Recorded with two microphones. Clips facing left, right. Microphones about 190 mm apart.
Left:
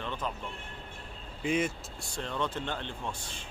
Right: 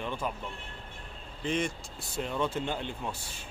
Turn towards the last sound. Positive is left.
turn(degrees=-10)  # may be behind; listen again after turning